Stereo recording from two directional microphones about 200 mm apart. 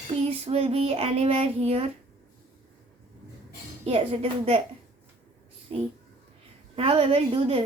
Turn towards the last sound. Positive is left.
turn(degrees=-30)  # may be behind; listen again after turning